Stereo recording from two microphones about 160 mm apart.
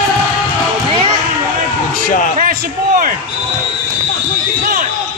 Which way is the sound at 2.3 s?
60° right (ahead or behind).